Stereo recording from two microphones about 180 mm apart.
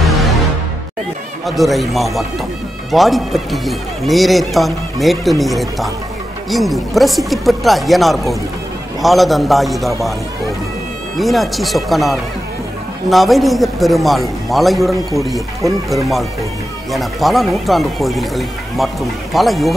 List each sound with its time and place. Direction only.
0.0 s music: centre (ahead or behind)
1.4 s a man's voice: centre (ahead or behind)
11.1 s a man's voice: centre (ahead or behind)
16.9 s a man's voice: centre (ahead or behind)